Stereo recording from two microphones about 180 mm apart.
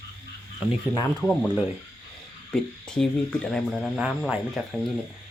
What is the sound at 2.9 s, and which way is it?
Speech, 5° left (ahead or behind).